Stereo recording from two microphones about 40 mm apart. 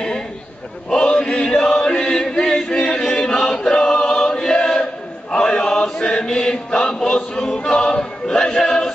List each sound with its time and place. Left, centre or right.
1.2 s chant: centre